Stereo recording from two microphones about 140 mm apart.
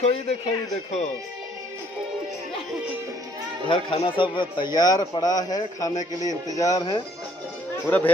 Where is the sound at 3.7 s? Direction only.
35° left (ahead or behind).